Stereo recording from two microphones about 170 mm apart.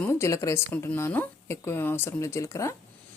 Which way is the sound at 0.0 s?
15° left (ahead or behind).